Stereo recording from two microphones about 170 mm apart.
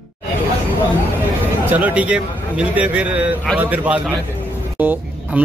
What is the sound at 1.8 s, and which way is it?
Speech, 10° right (ahead or behind).